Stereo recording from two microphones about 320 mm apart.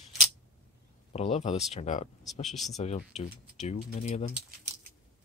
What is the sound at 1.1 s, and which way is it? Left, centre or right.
Speech, centre.